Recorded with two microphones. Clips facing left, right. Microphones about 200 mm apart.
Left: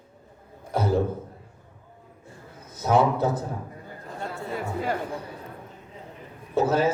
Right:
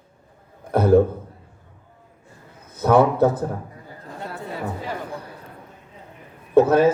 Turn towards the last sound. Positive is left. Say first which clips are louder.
# right 7 dB
turn(degrees=-60)  # may be behind; listen again after turning